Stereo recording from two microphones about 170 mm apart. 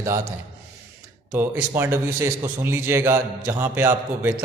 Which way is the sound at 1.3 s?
10° right (ahead or behind).